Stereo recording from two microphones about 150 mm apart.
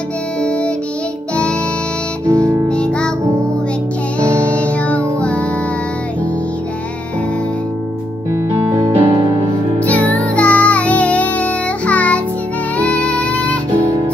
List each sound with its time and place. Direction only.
0.4 s music: 5° left (ahead or behind)
2.2 s music: 20° right (ahead or behind)
2.7 s music: 5° left (ahead or behind)
4.5 s music: 10° left (ahead or behind)
8.6 s music: 20° right (ahead or behind)
8.9 s music: 30° right (ahead or behind)
10.3 s music: 10° left (ahead or behind)